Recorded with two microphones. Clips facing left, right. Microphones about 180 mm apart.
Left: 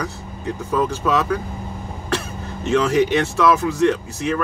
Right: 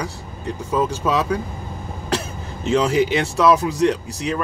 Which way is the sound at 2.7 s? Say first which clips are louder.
Left 1 dB; 15° right (ahead or behind).